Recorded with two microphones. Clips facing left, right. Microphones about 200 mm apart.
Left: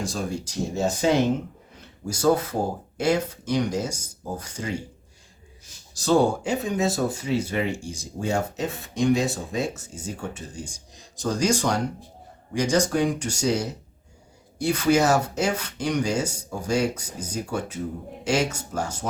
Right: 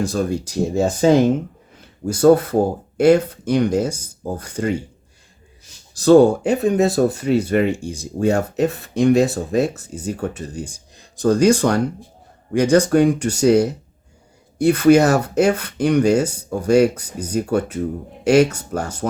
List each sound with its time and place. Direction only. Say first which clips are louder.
0.0 s speech: right 8 dB; 60° right (ahead or behind)
5.9 s speech: right 9 dB; 60° right (ahead or behind)